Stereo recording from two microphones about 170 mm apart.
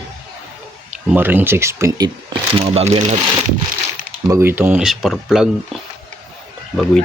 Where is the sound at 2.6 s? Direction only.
35° right (ahead or behind).